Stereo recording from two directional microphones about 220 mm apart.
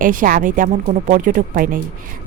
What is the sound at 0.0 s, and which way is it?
Speech, 40° right (ahead or behind).